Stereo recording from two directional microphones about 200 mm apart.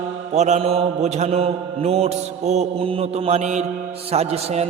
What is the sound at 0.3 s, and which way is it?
Mantra, 35° right (ahead or behind).